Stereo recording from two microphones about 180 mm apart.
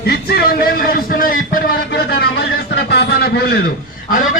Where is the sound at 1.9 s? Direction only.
65° left (ahead or behind).